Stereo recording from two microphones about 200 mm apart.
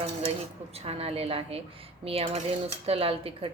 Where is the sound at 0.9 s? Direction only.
30° right (ahead or behind).